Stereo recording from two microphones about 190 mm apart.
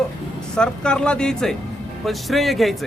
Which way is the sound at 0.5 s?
5° left (ahead or behind).